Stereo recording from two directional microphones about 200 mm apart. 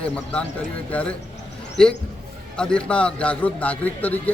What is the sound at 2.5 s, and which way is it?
A man's voice, 5° left (ahead or behind).